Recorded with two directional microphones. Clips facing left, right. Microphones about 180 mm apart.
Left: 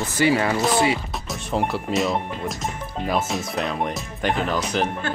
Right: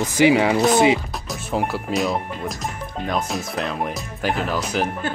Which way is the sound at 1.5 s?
Centre (ahead or behind).